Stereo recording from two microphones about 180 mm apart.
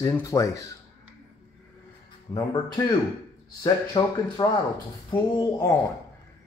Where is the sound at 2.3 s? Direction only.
25° left (ahead or behind).